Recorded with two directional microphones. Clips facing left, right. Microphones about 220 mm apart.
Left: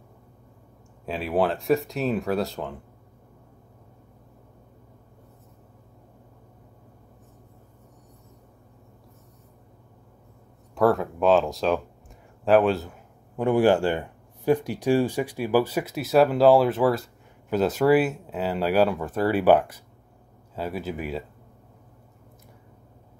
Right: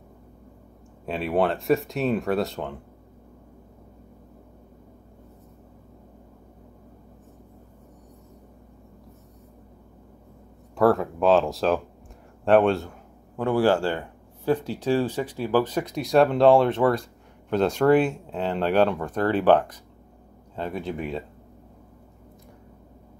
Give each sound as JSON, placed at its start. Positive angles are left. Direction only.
{"t": 1.0, "sound": "speech", "side_deg": 0}
{"t": 10.7, "sound": "speech", "side_deg": 0}
{"t": 13.4, "sound": "speech", "side_deg": 15}